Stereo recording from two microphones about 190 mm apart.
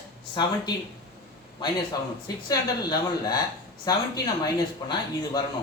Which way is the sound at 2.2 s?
20° left (ahead or behind).